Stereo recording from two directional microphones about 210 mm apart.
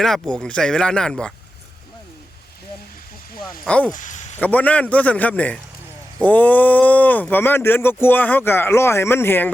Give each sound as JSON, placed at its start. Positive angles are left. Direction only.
{"t": 0.0, "sound": "speech", "side_deg": 5}
{"t": 3.6, "sound": "speech", "side_deg": 5}
{"t": 3.9, "sound": "a sound", "side_deg": 35}
{"t": 4.4, "sound": "speech", "side_deg": 5}